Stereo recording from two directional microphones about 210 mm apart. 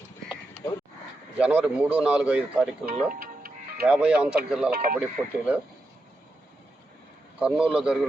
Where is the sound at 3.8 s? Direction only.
5° right (ahead or behind).